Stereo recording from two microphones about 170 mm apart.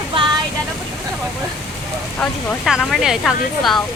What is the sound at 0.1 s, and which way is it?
Vehicle, 25° right (ahead or behind).